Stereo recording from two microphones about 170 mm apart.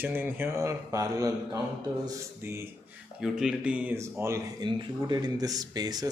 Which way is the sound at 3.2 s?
5° right (ahead or behind).